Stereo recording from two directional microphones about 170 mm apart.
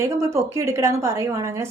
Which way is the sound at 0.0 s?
15° right (ahead or behind).